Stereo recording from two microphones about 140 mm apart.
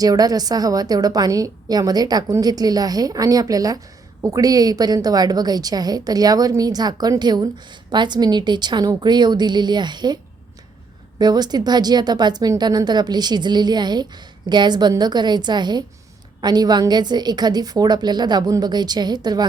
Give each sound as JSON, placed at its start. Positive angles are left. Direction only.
{"t": 0.0, "sound": "a woman's voice", "side_deg": -25}
{"t": 11.2, "sound": "a woman's voice", "side_deg": -30}